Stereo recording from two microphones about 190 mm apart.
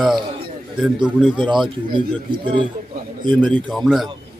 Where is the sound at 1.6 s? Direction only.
25° right (ahead or behind).